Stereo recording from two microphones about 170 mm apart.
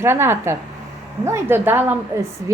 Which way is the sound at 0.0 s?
15° right (ahead or behind).